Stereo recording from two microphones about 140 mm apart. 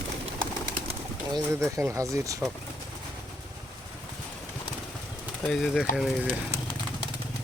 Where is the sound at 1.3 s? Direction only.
30° right (ahead or behind).